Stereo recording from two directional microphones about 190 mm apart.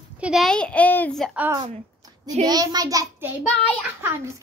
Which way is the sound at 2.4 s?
20° right (ahead or behind).